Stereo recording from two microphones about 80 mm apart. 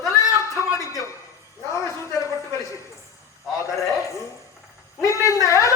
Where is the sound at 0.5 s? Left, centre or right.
Left.